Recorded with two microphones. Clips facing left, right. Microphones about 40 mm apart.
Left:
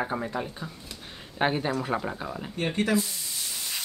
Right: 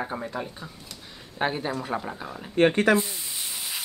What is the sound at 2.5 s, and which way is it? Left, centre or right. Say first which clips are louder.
Speech: right 8 dB; right.